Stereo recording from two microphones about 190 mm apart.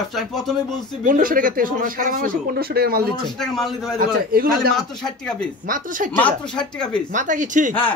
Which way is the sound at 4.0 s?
50° right (ahead or behind).